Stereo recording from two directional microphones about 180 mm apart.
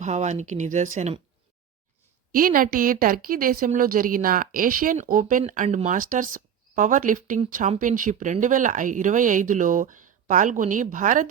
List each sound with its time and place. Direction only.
0.0 s speech: 40° right (ahead or behind)
2.3 s a woman's voice: 50° right (ahead or behind)